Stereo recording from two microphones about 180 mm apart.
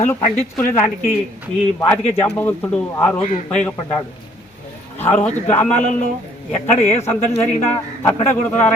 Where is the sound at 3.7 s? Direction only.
20° left (ahead or behind).